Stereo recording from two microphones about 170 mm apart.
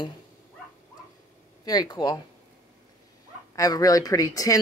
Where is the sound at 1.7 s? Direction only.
25° left (ahead or behind).